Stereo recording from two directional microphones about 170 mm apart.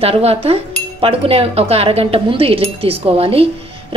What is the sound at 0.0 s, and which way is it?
A woman's voice, 35° right (ahead or behind).